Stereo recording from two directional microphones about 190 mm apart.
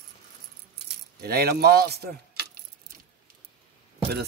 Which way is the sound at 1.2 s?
55° right (ahead or behind).